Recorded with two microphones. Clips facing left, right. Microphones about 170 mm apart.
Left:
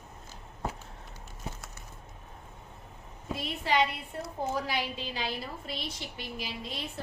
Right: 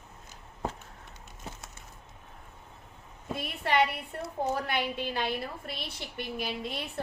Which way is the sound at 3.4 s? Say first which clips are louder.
Right 1 dB; 60° right (ahead or behind).